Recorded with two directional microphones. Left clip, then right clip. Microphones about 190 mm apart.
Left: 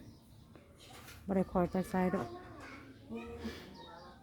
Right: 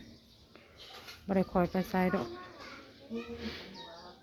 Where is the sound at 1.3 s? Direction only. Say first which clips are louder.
Right 3 dB; 10° left (ahead or behind).